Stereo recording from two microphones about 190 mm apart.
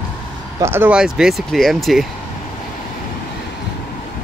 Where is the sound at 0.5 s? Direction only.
15° right (ahead or behind).